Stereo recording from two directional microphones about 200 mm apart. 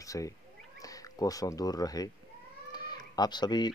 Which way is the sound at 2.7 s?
20° left (ahead or behind).